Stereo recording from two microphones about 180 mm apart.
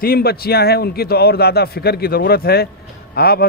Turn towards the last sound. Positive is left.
turn(degrees=60)  # may be behind; listen again after turning